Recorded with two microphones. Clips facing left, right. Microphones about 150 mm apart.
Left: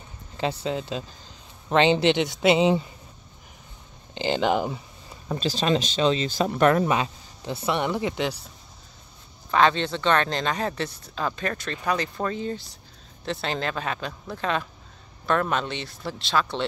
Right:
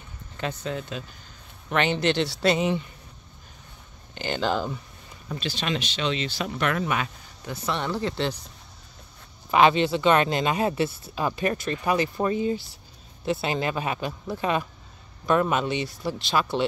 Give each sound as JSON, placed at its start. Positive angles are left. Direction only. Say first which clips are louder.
{"t": 0.4, "sound": "speech", "louder": "left 4 dB", "side_deg": 25}
{"t": 4.1, "sound": "speech", "louder": "left 3 dB", "side_deg": 25}
{"t": 5.3, "sound": "speech", "louder": "left 6 dB", "side_deg": 40}
{"t": 9.5, "sound": "speech", "louder": "right 2 dB", "side_deg": -10}